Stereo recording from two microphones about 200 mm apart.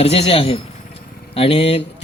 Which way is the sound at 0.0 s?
30° left (ahead or behind).